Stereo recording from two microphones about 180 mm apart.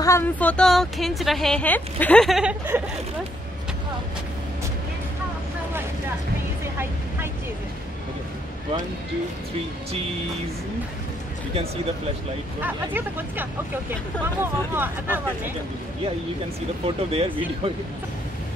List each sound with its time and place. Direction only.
0.0 s a woman's voice: 15° left (ahead or behind); by 2.8 s 10° right (ahead or behind)
11.5 s speech: 35° right (ahead or behind)
12.5 s speech: 10° right (ahead or behind)
16.8 s speech: 35° right (ahead or behind)